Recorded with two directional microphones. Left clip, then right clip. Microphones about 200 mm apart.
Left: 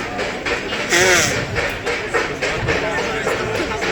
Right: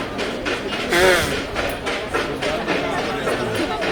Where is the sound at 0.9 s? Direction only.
45° left (ahead or behind).